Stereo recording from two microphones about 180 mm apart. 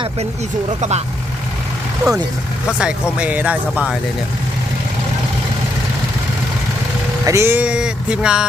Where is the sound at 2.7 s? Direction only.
5° right (ahead or behind).